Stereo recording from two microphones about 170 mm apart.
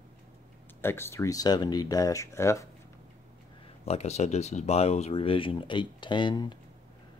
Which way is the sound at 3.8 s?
40° left (ahead or behind).